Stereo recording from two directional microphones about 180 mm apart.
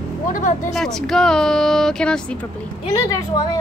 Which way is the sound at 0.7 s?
Centre (ahead or behind).